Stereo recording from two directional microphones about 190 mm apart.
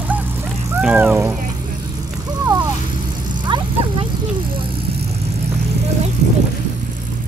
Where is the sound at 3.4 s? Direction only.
25° right (ahead or behind).